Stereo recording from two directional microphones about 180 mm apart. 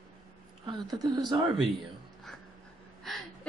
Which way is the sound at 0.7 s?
20° right (ahead or behind).